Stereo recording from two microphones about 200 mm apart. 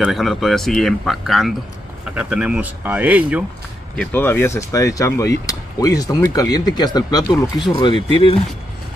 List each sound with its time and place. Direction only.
0.0 s speech: centre (ahead or behind)
3.9 s speech: 5° left (ahead or behind); by 7.9 s 20° left (ahead or behind)